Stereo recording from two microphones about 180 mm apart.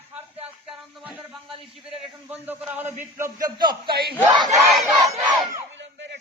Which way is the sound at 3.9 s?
60° right (ahead or behind).